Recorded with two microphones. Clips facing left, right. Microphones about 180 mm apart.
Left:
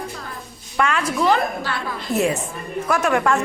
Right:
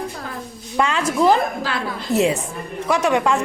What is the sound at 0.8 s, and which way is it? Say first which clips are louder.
Speech: right 2 dB; 30° right (ahead or behind).